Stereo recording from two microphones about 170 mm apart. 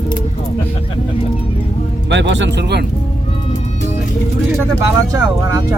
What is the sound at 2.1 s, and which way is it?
Speech, 90° right.